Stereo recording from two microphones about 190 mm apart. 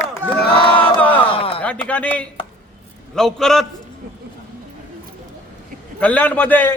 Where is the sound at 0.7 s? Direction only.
10° left (ahead or behind).